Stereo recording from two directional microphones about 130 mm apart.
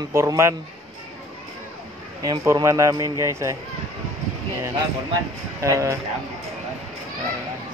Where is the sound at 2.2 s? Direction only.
30° right (ahead or behind).